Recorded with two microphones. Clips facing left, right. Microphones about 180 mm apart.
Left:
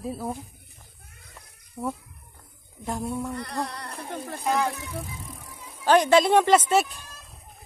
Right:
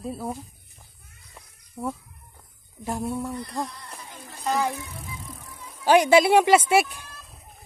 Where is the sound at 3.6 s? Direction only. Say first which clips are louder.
Left 5 dB; 70° left (ahead or behind).